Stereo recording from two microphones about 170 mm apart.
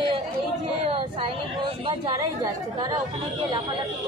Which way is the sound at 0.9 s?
30° right (ahead or behind).